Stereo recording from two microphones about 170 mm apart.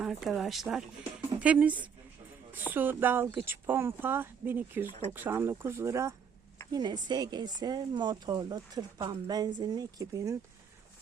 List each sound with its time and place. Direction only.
0.0 s speech: centre (ahead or behind); by 10.3 s 20° right (ahead or behind)